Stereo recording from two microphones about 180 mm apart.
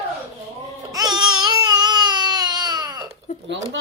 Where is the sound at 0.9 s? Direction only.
20° right (ahead or behind).